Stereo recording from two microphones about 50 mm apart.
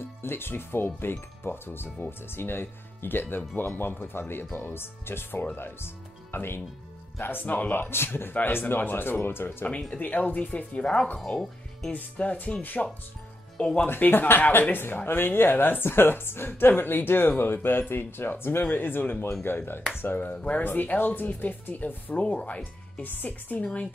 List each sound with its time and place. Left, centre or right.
0.2 s speech: left
7.4 s speech: left
9.7 s speech: left
11.1 s speech: centre
11.9 s music: left
13.8 s speech: left
20.3 s music: left
20.7 s speech: left
22.2 s music: left
23.0 s speech: left
23.6 s music: left